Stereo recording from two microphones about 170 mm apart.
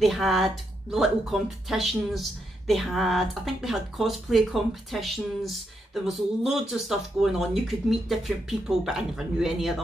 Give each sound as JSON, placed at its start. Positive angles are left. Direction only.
{"t": 0.0, "sound": "speech", "side_deg": 0}